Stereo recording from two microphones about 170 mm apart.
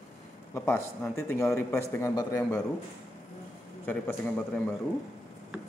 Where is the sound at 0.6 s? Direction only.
10° left (ahead or behind).